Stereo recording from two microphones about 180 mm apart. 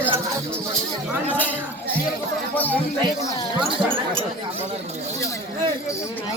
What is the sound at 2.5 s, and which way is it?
Speech, 10° left (ahead or behind).